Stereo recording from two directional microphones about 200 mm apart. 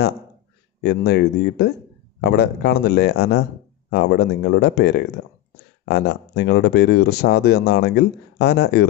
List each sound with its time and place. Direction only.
0.7 s speech: 55° left (ahead or behind)